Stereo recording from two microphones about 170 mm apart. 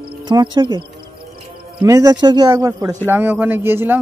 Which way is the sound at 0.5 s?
30° right (ahead or behind).